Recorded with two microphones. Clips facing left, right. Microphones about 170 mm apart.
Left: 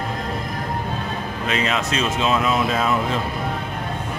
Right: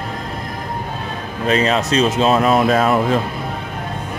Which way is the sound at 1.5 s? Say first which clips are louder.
Right 7 dB; 40° right (ahead or behind).